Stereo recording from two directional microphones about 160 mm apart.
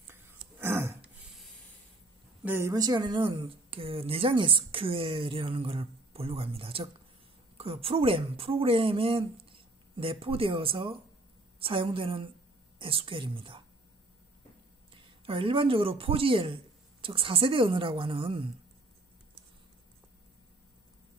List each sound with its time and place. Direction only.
0.0 s throat clearing: 15° right (ahead or behind)
0.6 s a sound: 15° right (ahead or behind)
2.4 s speech: 15° right (ahead or behind); by 13.6 s 35° right (ahead or behind)
15.0 s speech: 35° right (ahead or behind)